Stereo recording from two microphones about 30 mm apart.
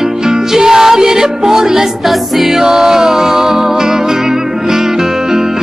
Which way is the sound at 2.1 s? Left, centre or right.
Centre.